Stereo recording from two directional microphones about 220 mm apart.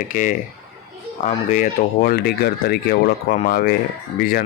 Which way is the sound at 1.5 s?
35° left (ahead or behind).